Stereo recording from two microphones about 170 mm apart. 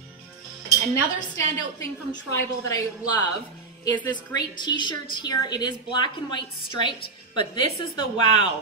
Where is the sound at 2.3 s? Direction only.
20° left (ahead or behind).